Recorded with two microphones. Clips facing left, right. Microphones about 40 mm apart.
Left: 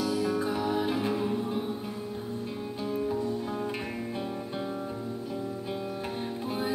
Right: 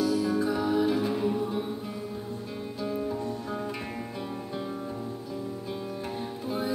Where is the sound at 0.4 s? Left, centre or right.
Left.